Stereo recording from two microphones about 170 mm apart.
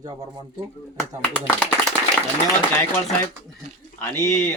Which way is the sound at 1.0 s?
5° left (ahead or behind).